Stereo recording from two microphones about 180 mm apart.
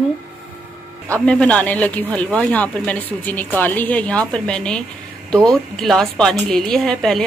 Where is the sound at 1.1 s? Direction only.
5° left (ahead or behind).